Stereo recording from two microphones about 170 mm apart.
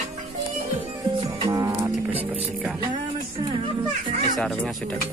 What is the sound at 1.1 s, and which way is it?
Music, 25° right (ahead or behind).